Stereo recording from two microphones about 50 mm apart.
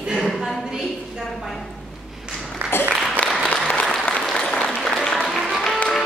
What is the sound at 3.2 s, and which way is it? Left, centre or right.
Applause, left.